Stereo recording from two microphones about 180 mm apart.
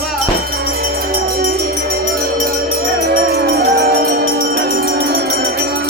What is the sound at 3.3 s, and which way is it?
Music, 60° right (ahead or behind).